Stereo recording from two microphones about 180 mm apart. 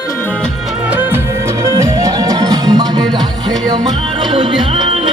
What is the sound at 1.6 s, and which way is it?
Music, 20° right (ahead or behind).